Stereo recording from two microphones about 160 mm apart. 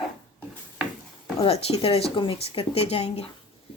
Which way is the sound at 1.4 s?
40° left (ahead or behind).